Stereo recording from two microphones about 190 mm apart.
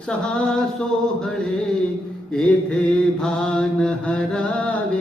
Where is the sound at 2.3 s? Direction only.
5° left (ahead or behind).